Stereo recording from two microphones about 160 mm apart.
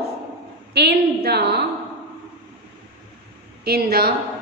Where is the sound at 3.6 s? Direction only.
70° right (ahead or behind).